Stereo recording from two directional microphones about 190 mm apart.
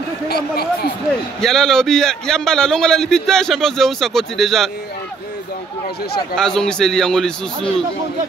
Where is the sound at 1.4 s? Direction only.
Centre (ahead or behind).